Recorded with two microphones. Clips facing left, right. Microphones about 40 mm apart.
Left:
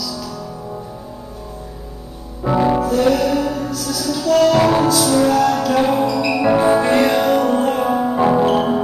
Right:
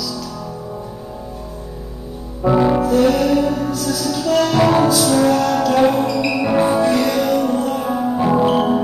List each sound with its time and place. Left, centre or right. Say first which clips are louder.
2.4 s music: right 1 dB; centre
3.1 s music: right 1 dB; centre
6.7 s music: left 2 dB; left
7.9 s music: right 1 dB; left
8.5 s music: even; centre